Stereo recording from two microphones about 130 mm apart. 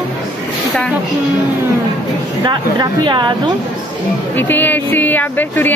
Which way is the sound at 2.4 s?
35° right (ahead or behind).